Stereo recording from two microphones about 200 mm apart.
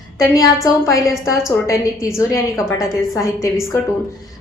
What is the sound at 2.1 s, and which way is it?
A woman's voice, 15° left (ahead or behind).